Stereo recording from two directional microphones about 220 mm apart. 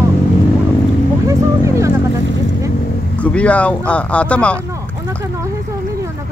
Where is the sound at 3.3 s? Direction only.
5° left (ahead or behind).